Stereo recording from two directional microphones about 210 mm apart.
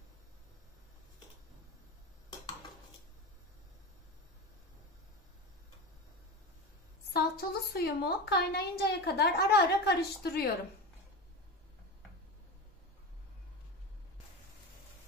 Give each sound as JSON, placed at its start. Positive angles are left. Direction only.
{"t": 7.1, "sound": "a woman's voice", "side_deg": 45}